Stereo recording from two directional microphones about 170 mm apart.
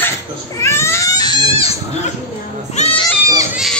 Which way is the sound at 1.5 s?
35° left (ahead or behind).